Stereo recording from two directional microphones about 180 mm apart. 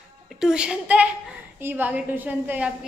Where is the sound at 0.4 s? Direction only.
5° right (ahead or behind).